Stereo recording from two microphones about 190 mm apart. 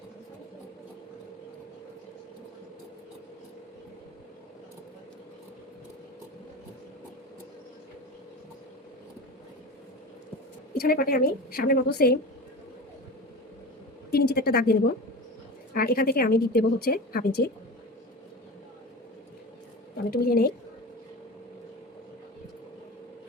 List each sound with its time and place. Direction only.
10.8 s a woman's voice: 55° left (ahead or behind)
14.1 s a sound: 55° left (ahead or behind)
15.7 s a woman's voice: 50° left (ahead or behind)
20.1 s a woman's voice: 50° left (ahead or behind)